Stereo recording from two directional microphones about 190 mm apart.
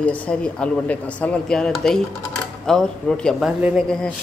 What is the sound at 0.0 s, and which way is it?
A man's voice, 5° left (ahead or behind).